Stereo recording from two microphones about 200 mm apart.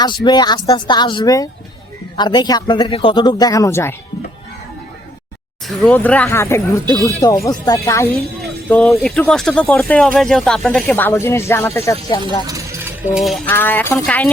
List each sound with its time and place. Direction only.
0.0 s speech: 20° left (ahead or behind)
5.6 s speech: 5° left (ahead or behind)
8.4 s speech: centre (ahead or behind)
12.2 s a sound: 15° right (ahead or behind)
13.1 s speech: centre (ahead or behind)